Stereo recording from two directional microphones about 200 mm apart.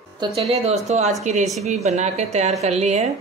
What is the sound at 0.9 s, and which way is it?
A woman's voice, 35° right (ahead or behind).